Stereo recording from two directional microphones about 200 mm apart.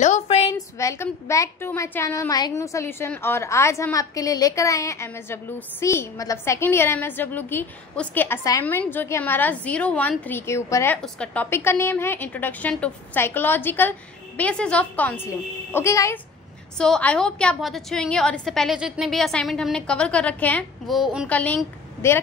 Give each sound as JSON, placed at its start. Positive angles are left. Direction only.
{"t": 0.0, "sound": "a sound", "side_deg": 35}
{"t": 0.6, "sound": "a woman's voice", "side_deg": 15}
{"t": 16.7, "sound": "a woman's voice", "side_deg": 5}